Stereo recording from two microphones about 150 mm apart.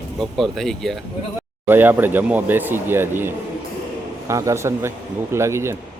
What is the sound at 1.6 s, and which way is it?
Speech, 15° right (ahead or behind).